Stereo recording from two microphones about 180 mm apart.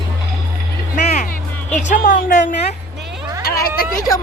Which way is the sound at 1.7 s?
45° left (ahead or behind).